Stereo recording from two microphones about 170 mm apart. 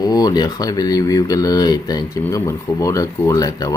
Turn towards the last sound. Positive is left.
turn(degrees=20)  # may be behind; listen again after turning